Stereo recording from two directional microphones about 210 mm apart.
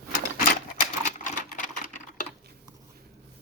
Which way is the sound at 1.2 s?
35° left (ahead or behind).